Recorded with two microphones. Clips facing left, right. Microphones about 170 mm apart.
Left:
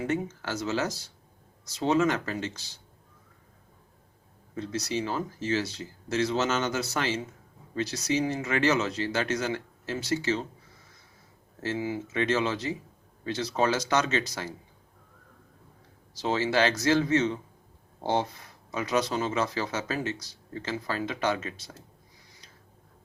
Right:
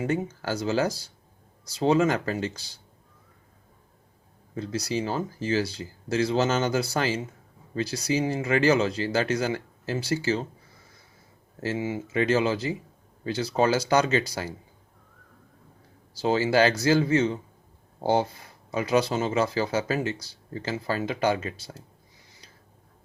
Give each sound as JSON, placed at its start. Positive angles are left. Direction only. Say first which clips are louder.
{"t": 0.0, "sound": "speech", "louder": "right 2 dB", "side_deg": -35}
{"t": 4.5, "sound": "speech", "louder": "right 2 dB", "side_deg": -35}
{"t": 11.6, "sound": "speech", "louder": "right 2 dB", "side_deg": -25}
{"t": 16.1, "sound": "speech", "louder": "right 4 dB", "side_deg": -30}